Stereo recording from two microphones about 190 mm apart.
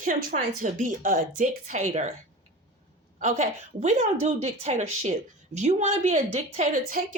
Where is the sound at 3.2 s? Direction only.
40° right (ahead or behind).